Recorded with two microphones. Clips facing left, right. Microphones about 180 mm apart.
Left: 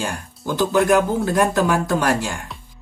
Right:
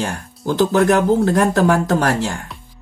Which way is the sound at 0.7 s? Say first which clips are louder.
Right 1 dB; 45° right (ahead or behind).